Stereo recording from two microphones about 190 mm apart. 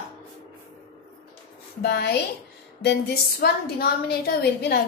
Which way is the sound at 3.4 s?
55° left (ahead or behind).